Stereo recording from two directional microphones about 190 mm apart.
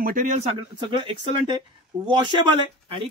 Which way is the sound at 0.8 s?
25° right (ahead or behind).